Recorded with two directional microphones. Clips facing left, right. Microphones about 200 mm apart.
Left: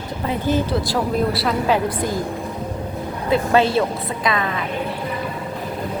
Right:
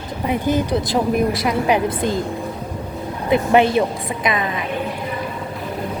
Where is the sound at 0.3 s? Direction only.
15° right (ahead or behind).